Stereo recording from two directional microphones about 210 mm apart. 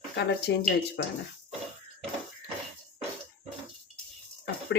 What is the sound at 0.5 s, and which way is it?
Speech, 50° left (ahead or behind).